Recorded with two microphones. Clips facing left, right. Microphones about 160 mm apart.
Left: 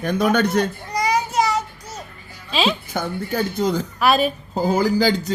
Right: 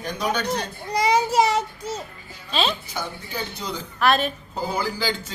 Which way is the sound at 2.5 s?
Centre (ahead or behind).